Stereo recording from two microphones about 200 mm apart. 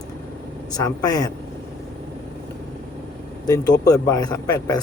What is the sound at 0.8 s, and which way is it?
Speech, 20° left (ahead or behind).